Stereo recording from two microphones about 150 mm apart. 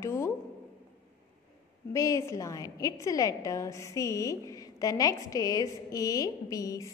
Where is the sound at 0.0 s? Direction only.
20° left (ahead or behind).